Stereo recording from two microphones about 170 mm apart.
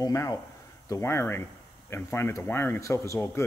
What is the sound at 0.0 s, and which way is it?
A man's voice, 20° left (ahead or behind).